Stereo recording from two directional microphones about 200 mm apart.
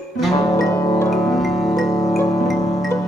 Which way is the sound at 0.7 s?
15° left (ahead or behind).